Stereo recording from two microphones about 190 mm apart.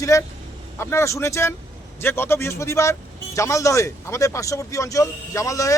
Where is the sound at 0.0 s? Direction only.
15° left (ahead or behind).